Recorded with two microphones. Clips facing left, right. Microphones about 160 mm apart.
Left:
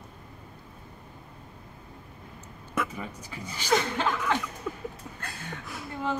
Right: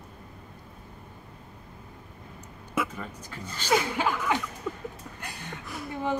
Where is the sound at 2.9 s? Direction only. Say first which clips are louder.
Left 1 dB; 10° left (ahead or behind).